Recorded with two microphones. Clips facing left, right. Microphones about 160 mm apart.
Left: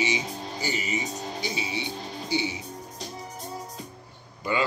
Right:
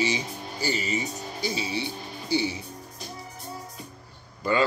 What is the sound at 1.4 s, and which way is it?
Speech, 15° left (ahead or behind).